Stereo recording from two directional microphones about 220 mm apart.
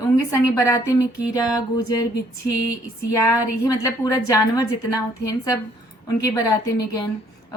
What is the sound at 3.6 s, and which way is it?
A woman's voice, 15° left (ahead or behind).